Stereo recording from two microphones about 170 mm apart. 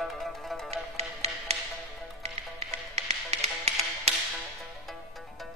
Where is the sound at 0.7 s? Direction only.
40° right (ahead or behind).